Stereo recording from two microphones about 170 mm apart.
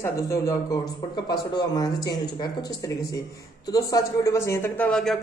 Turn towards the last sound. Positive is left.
turn(degrees=5)  # may be behind; listen again after turning